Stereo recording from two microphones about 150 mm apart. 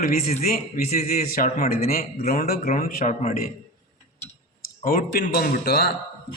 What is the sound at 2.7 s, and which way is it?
Speech, 70° left (ahead or behind).